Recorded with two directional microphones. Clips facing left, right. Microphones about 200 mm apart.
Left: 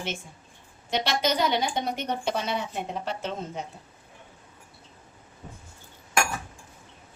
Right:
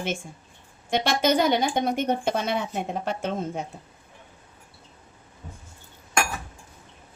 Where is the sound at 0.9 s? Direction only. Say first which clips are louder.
Right 4 dB; 50° right (ahead or behind).